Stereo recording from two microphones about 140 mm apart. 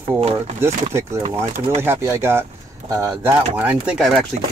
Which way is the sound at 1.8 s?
20° right (ahead or behind).